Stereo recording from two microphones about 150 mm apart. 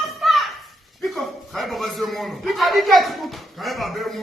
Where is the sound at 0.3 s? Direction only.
Centre (ahead or behind).